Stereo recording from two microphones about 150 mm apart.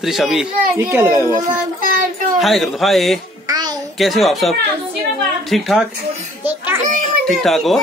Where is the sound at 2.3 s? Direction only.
Centre (ahead or behind).